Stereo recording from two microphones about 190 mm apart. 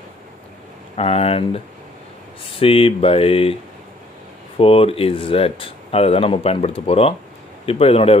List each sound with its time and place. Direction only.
0.9 s speech: 30° left (ahead or behind)
2.6 s speech: 30° left (ahead or behind)
4.6 s speech: 30° left (ahead or behind)